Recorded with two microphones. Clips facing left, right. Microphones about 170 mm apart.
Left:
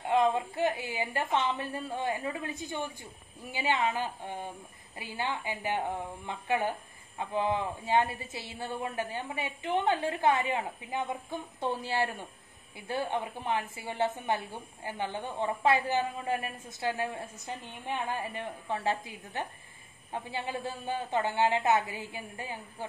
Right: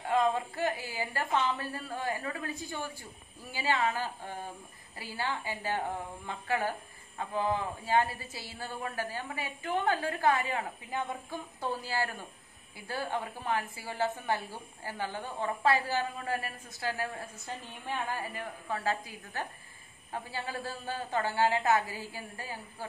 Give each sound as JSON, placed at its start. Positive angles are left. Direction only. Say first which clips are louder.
{"t": 0.0, "sound": "a woman's voice", "louder": "left 2 dB", "side_deg": 20}